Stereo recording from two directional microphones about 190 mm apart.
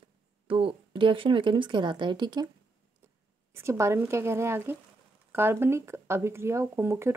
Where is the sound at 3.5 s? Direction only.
15° right (ahead or behind).